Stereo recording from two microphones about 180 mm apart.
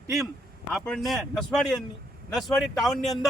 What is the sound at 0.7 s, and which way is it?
Speech, centre (ahead or behind).